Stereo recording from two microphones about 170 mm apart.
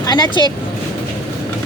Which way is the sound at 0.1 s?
25° left (ahead or behind).